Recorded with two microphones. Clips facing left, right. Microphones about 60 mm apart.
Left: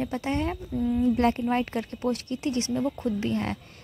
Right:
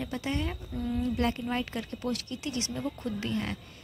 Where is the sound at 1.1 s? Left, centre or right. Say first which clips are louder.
Left 6 dB; left.